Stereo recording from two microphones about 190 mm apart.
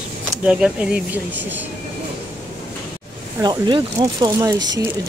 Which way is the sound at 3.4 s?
20° right (ahead or behind).